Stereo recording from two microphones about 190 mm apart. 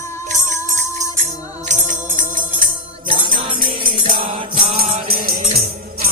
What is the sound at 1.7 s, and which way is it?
Music, 40° right (ahead or behind).